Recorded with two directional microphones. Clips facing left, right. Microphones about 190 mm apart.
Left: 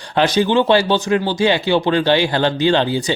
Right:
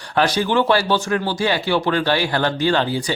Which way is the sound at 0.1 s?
25° left (ahead or behind).